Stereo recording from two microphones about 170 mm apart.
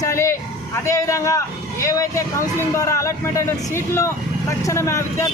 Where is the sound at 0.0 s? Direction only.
15° left (ahead or behind).